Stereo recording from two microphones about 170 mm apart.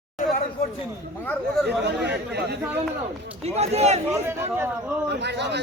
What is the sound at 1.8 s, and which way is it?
Speech, 80° right.